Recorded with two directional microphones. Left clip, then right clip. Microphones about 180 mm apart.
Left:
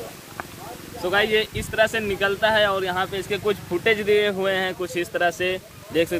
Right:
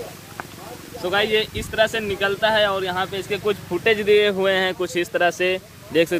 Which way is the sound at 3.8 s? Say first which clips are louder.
Right 3 dB; 30° right (ahead or behind).